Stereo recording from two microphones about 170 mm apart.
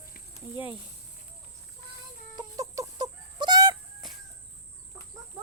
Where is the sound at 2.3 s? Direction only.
20° right (ahead or behind).